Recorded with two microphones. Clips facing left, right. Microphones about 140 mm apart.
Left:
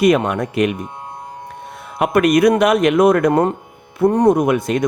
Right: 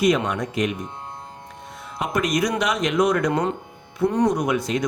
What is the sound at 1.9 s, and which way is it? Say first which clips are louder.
Speech: left 9 dB; 60° left (ahead or behind).